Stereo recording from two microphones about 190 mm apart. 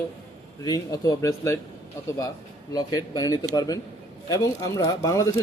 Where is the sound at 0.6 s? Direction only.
20° left (ahead or behind).